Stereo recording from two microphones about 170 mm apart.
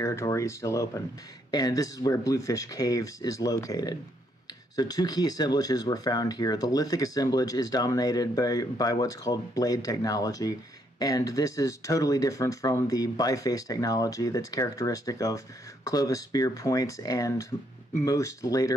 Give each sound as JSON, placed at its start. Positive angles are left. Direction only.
{"t": 0.0, "sound": "speech", "side_deg": 15}